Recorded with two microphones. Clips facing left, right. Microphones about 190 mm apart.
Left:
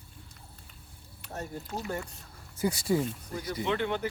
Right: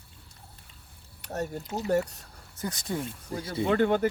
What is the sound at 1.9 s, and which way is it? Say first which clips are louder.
Speech: right 15 dB; 70° right (ahead or behind).